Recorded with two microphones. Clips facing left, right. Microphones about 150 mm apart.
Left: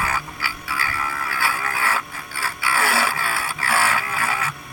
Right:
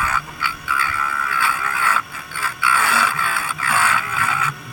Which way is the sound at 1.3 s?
35° left (ahead or behind).